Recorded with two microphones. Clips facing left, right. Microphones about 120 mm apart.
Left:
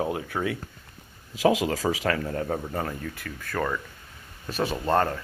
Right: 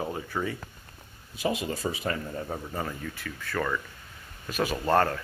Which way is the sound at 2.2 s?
50° left (ahead or behind).